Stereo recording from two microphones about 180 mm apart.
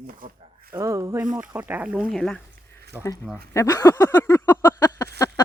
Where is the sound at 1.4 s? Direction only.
10° right (ahead or behind).